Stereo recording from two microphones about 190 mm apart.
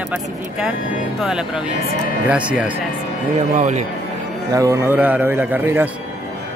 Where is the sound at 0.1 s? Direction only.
5° right (ahead or behind).